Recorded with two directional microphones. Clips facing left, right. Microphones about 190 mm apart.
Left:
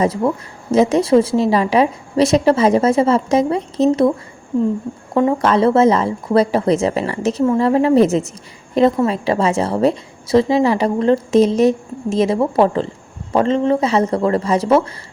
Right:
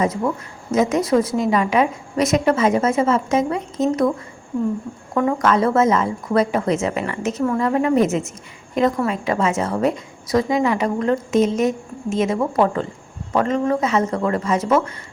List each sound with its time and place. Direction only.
0.0 s a woman's voice: 30° left (ahead or behind)
5.1 s a woman's voice: 30° left (ahead or behind)